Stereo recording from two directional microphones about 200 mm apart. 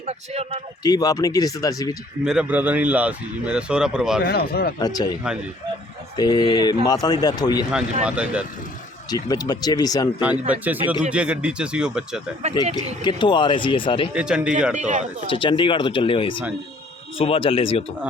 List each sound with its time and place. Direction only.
0.0 s a man's voice: 30° right (ahead or behind)
0.8 s a man's voice: 20° left (ahead or behind)
2.2 s a man's voice: 5° right (ahead or behind)
4.2 s speech: 50° left (ahead or behind)
4.8 s a man's voice: 20° left (ahead or behind)
6.1 s a man's voice: 20° left (ahead or behind)
8.0 s a man's voice: 5° right (ahead or behind)
9.0 s a man's voice: 20° left (ahead or behind)
10.2 s a man's voice: 5° right (ahead or behind)
13.1 s a man's voice: 25° left (ahead or behind)
14.1 s a man's voice: 5° right (ahead or behind)
14.8 s speech: 35° right (ahead or behind)
15.3 s a man's voice: 25° left (ahead or behind)